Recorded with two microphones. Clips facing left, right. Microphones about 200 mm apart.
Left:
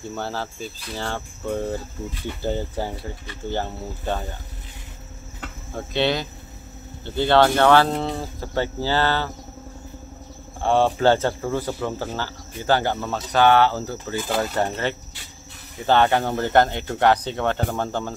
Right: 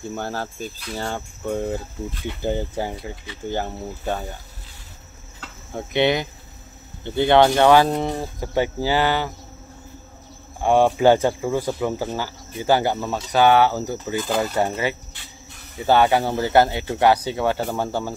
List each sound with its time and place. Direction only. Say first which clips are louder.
0.1 s speech: even; 15° right (ahead or behind)
5.8 s speech: right 3 dB; 15° right (ahead or behind)
10.6 s speech: right 2 dB; 15° right (ahead or behind)